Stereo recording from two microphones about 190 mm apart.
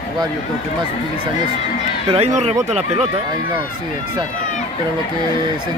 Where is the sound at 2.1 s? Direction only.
35° right (ahead or behind).